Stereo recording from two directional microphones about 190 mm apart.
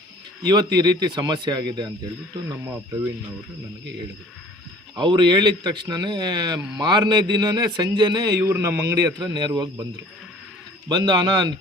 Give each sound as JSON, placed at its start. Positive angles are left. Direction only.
{"t": 0.4, "sound": "a man's voice", "side_deg": -20}
{"t": 4.9, "sound": "a man's voice", "side_deg": -25}
{"t": 10.8, "sound": "a man's voice", "side_deg": -25}